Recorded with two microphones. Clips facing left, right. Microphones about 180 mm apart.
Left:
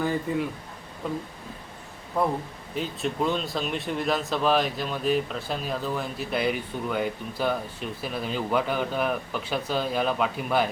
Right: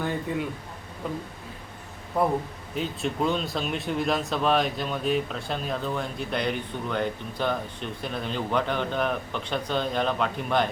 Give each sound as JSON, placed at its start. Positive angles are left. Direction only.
{"t": 0.3, "sound": "speech", "side_deg": 0}